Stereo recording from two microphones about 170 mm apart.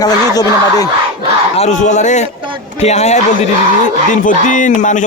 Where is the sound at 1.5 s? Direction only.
40° left (ahead or behind).